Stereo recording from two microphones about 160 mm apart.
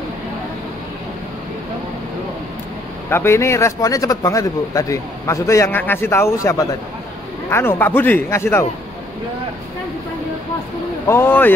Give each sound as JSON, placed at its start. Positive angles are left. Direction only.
{"t": 3.1, "sound": "a man's voice", "side_deg": 15}
{"t": 11.1, "sound": "a man's voice", "side_deg": 15}